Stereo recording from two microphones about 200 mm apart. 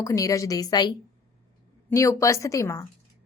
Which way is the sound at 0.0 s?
15° left (ahead or behind).